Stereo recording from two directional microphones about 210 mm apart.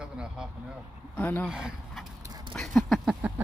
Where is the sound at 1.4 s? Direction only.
5° right (ahead or behind).